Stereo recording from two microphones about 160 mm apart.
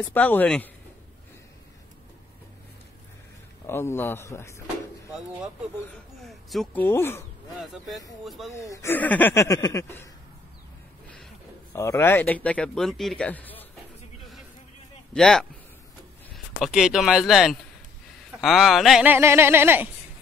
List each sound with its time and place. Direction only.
0.0 s speech: 10° left (ahead or behind)
3.6 s speech: 15° left (ahead or behind)
6.2 s speech: centre (ahead or behind)
7.6 s speech: centre (ahead or behind)
8.5 s speech: 15° left (ahead or behind)
11.7 s speech: 15° left (ahead or behind)
15.1 s speech: 5° left (ahead or behind)
16.5 s speech: centre (ahead or behind)
19.1 s speech: 15° right (ahead or behind)